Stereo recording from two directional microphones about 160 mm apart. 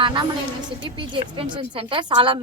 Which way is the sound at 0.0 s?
30° right (ahead or behind).